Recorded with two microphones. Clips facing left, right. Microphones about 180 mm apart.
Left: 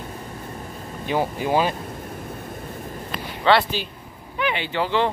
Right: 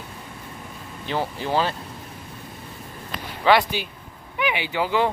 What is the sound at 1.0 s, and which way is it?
Speech, 15° left (ahead or behind).